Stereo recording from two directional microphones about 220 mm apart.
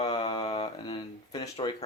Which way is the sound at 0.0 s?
20° left (ahead or behind).